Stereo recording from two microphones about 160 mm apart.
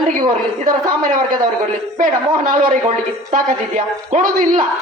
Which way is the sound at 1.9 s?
55° right (ahead or behind).